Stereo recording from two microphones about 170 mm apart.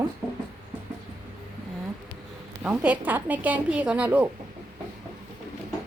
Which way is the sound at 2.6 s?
5° right (ahead or behind).